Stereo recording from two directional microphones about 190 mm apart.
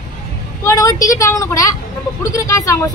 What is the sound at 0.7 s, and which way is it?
A woman's voice, 20° left (ahead or behind).